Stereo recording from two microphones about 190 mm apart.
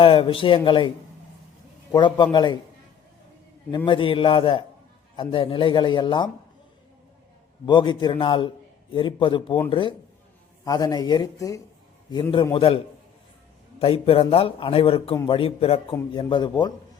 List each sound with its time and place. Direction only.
0.0 s a man's voice: 30° left (ahead or behind)
1.9 s a man's voice: 25° left (ahead or behind)
3.8 s a man's voice: 25° left (ahead or behind)
7.6 s a man's voice: 25° left (ahead or behind)
12.5 s a man's voice: 30° left (ahead or behind)